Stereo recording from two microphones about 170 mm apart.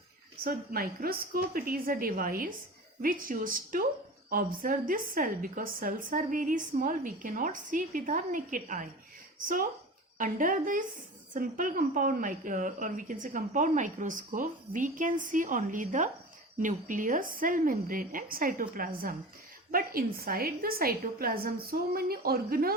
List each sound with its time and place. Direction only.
0.4 s a woman's voice: 60° right (ahead or behind)
10.2 s a woman's voice: 50° right (ahead or behind)